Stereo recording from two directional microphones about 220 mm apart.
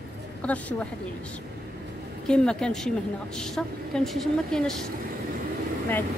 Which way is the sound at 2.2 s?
5° left (ahead or behind).